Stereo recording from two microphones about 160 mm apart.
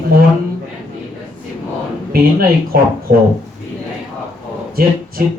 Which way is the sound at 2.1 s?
70° right (ahead or behind).